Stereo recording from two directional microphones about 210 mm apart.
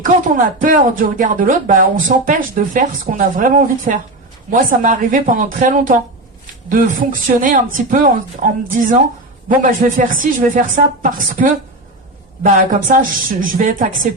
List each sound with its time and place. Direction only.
0.0 s speech: 40° right (ahead or behind)
9.6 s speech: 40° right (ahead or behind)